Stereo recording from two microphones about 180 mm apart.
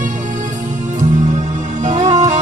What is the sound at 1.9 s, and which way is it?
Music, 40° right (ahead or behind).